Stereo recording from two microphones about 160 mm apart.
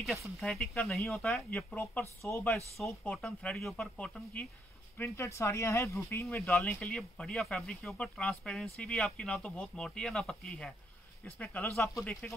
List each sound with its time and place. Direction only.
0.0 s speech: centre (ahead or behind); by 6.2 s 15° left (ahead or behind)
6.4 s speech: 5° left (ahead or behind)